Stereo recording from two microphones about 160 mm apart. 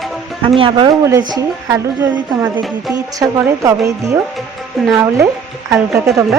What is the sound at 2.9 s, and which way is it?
Speech, 20° right (ahead or behind).